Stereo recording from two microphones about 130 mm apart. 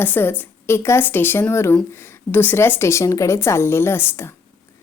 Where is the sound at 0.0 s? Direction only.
15° left (ahead or behind).